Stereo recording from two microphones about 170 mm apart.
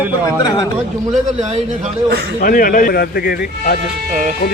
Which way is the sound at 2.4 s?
55° left (ahead or behind).